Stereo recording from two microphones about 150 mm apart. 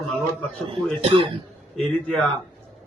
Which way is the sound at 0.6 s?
35° right (ahead or behind).